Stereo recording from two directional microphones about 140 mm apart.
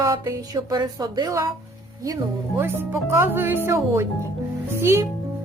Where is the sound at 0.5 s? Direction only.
30° right (ahead or behind).